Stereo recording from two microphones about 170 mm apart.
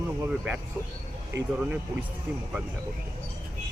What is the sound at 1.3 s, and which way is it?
Speech, 90° right.